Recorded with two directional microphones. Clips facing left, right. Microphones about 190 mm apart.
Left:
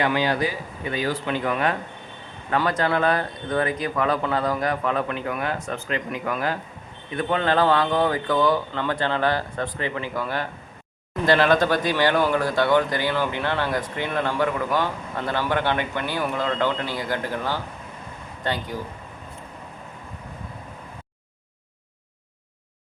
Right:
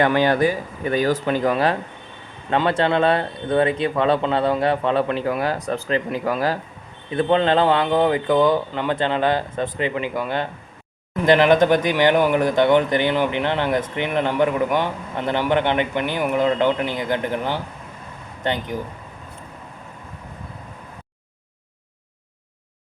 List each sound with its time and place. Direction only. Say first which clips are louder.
0.0 s speech: right 5 dB; 50° right (ahead or behind); by 18.8 s 20° right (ahead or behind)